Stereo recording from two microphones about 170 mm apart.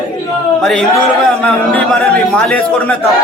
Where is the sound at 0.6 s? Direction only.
Centre (ahead or behind).